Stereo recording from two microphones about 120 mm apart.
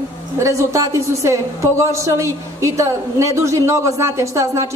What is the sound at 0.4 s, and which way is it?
A woman's voice, 25° right (ahead or behind).